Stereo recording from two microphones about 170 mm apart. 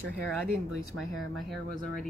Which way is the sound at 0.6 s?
Centre (ahead or behind).